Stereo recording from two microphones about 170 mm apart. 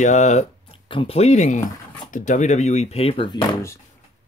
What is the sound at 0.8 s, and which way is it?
Speech, 30° left (ahead or behind).